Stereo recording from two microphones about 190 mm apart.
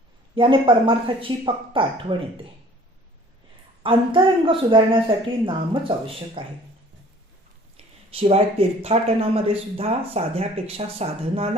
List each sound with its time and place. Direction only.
0.3 s speech: 25° right (ahead or behind)
3.8 s speech: 25° right (ahead or behind)
8.1 s speech: 30° right (ahead or behind)